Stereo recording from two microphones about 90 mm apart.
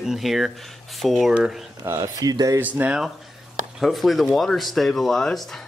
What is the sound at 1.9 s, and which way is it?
Speech, 30° right (ahead or behind).